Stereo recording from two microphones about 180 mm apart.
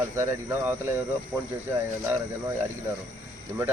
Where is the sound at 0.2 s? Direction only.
10° right (ahead or behind).